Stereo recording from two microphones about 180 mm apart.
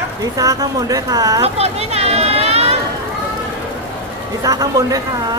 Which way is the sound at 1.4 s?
35° right (ahead or behind).